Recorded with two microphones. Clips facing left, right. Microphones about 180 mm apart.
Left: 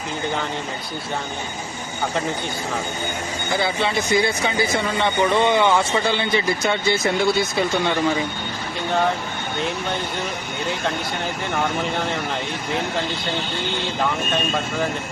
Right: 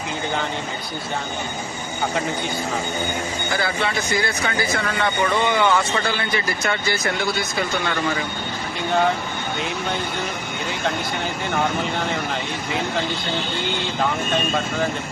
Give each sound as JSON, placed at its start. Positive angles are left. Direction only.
{"t": 3.6, "sound": "speech", "side_deg": 25}